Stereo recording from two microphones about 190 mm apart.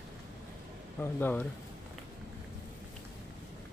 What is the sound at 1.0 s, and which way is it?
Speech, 10° left (ahead or behind).